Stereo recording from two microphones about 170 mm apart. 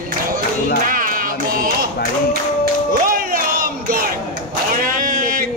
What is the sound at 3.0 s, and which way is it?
Crowd, 55° right (ahead or behind).